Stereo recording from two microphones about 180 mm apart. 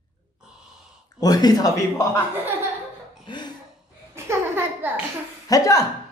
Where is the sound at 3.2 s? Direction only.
25° left (ahead or behind).